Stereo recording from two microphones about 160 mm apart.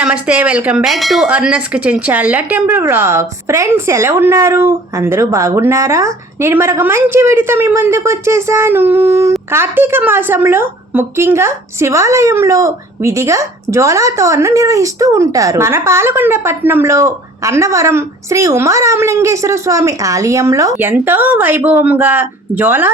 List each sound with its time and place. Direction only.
0.0 s a woman's voice: 5° right (ahead or behind)